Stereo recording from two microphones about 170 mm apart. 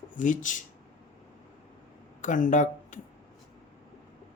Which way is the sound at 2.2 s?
50° left (ahead or behind).